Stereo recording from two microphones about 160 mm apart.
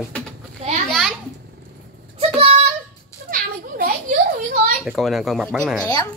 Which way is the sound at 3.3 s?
65° right (ahead or behind).